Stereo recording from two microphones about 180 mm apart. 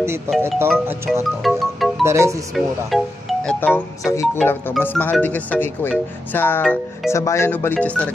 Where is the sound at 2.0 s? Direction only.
15° right (ahead or behind).